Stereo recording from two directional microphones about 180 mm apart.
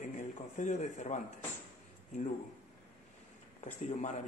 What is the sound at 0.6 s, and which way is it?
Speech, 40° left (ahead or behind).